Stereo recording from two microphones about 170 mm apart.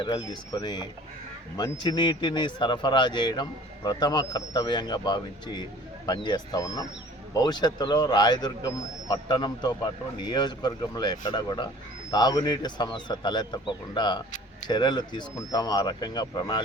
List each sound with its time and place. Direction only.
0.0 s a man's voice: 25° left (ahead or behind)